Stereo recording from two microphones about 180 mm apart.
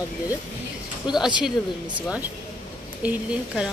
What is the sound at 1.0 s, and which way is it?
Speech, 25° left (ahead or behind).